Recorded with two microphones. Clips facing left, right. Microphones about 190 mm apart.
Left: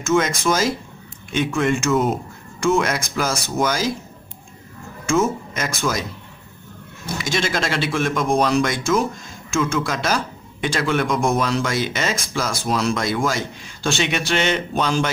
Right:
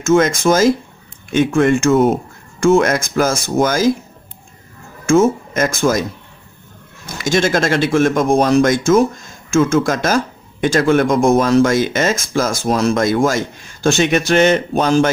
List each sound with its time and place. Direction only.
0.0 s speech: 50° right (ahead or behind)
5.0 s speech: 50° right (ahead or behind)
7.2 s speech: 45° right (ahead or behind)